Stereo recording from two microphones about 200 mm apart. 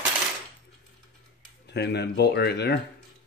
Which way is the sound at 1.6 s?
55° left (ahead or behind).